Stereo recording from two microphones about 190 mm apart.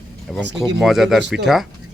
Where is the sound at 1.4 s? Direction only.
Centre (ahead or behind).